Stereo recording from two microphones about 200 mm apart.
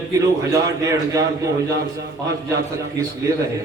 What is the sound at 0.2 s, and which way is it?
Speech, 15° right (ahead or behind).